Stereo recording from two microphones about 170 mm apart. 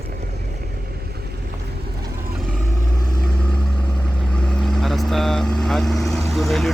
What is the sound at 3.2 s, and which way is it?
Vehicle, 5° left (ahead or behind).